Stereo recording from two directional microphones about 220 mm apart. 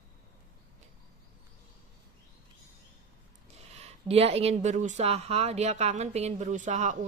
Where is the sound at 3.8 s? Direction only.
25° right (ahead or behind).